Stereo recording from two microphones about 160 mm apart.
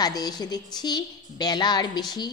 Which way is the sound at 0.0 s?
25° left (ahead or behind).